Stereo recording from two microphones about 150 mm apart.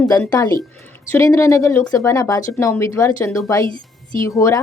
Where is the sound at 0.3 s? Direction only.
25° left (ahead or behind).